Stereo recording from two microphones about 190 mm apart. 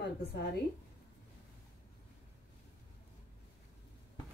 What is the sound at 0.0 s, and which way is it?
Speech, 60° left (ahead or behind).